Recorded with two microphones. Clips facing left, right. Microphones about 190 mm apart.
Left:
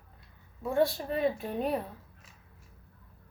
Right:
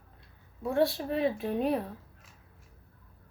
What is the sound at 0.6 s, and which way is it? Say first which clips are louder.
A woman's voice: even; centre (ahead or behind).